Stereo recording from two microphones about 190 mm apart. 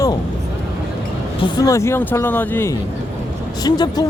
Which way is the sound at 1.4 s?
20° left (ahead or behind).